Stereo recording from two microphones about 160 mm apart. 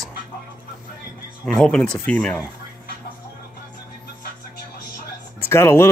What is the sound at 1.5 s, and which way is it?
Speech, 5° left (ahead or behind).